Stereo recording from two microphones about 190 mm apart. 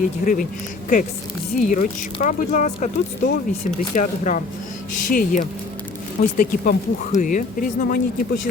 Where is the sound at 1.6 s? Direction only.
40° left (ahead or behind).